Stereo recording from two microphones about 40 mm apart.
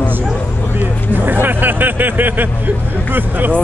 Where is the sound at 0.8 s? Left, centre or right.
Right.